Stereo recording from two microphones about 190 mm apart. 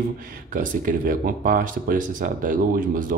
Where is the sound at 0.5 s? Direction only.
45° right (ahead or behind).